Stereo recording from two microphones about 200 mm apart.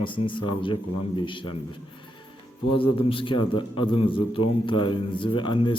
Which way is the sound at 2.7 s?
25° left (ahead or behind).